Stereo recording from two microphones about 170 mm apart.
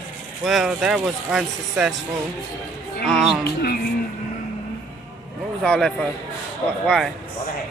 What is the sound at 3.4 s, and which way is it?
Music, 65° left (ahead or behind).